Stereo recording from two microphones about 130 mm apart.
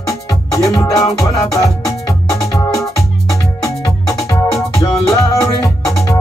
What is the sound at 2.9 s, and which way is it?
Music, 25° left (ahead or behind).